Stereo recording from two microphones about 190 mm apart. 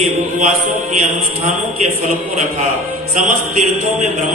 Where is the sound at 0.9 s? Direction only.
40° right (ahead or behind).